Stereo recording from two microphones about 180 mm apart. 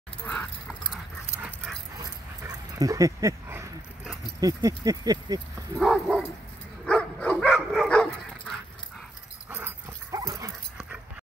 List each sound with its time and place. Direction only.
0.2 s dog: 10° left (ahead or behind)
2.0 s dog: 20° right (ahead or behind)
4.4 s speech: 20° right (ahead or behind)
5.8 s bow-wow: centre (ahead or behind)
6.9 s dog: 5° left (ahead or behind)
9.5 s dog: 10° right (ahead or behind)